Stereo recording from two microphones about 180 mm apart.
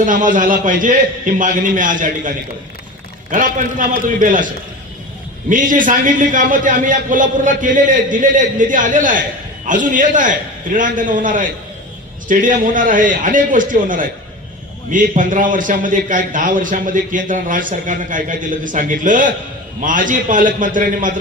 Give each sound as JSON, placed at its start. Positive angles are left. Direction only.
{"t": 0.0, "sound": "a man's voice", "side_deg": -50}
{"t": 3.3, "sound": "a man's voice", "side_deg": -50}
{"t": 5.5, "sound": "a man's voice", "side_deg": -45}